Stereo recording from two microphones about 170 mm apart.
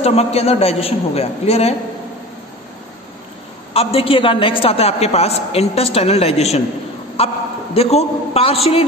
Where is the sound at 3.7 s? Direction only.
35° left (ahead or behind).